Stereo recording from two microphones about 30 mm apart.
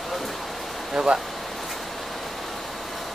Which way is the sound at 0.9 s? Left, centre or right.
Right.